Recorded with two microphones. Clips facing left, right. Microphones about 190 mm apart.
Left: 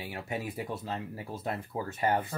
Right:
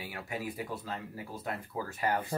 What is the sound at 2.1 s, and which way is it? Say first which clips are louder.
Speech: left 3 dB; 25° left (ahead or behind).